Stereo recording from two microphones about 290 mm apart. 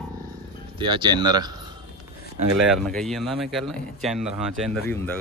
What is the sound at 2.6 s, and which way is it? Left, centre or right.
Speech, centre.